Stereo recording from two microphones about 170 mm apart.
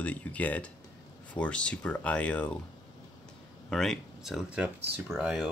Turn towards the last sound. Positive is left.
turn(degrees=0)  # may be behind; listen again after turning